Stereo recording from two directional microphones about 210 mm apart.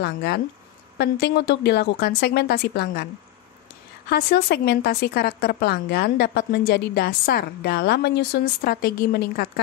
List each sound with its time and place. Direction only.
0.0 s a woman's voice: 50° left (ahead or behind)
4.1 s a woman's voice: 50° left (ahead or behind)